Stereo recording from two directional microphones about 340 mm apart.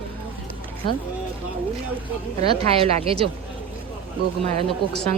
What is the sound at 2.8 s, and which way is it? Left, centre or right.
Speech, centre.